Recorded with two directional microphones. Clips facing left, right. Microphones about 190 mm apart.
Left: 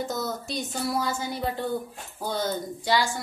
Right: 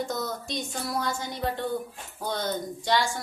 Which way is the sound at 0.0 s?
5° left (ahead or behind).